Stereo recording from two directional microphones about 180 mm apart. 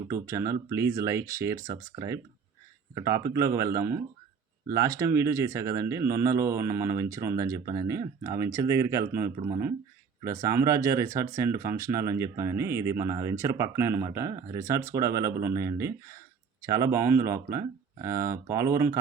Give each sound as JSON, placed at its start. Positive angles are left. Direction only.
{"t": 0.1, "sound": "speech", "side_deg": -20}